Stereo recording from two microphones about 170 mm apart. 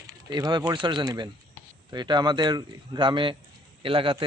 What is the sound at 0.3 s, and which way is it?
A man's voice, 25° right (ahead or behind).